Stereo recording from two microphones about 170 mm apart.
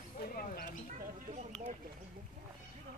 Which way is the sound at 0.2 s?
60° left (ahead or behind).